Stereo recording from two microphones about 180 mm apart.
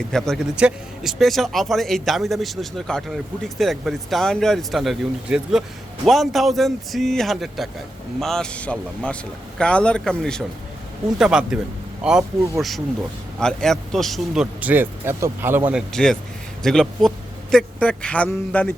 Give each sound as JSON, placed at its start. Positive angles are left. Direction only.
{"t": 0.1, "sound": "speech", "side_deg": 0}
{"t": 15.9, "sound": "a man's voice", "side_deg": 5}